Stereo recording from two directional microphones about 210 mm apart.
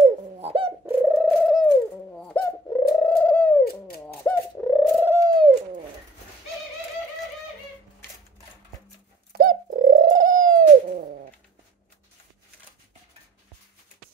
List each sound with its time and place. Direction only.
0.0 s bird: 30° right (ahead or behind)
0.8 s bird: 10° right (ahead or behind)
5.1 s bird: 15° right (ahead or behind)
9.4 s bird: 40° right (ahead or behind)